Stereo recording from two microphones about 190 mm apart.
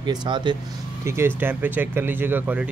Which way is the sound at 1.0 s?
15° right (ahead or behind).